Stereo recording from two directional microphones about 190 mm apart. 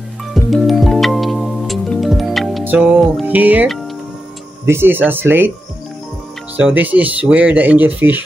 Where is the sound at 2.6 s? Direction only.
10° right (ahead or behind).